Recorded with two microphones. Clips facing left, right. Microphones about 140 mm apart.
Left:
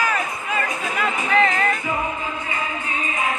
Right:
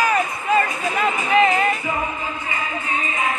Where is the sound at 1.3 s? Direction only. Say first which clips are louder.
Right 3 dB; 10° right (ahead or behind).